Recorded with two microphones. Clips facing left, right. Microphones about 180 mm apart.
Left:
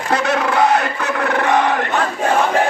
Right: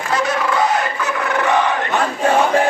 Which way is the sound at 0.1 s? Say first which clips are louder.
Left 2 dB; 65° left (ahead or behind).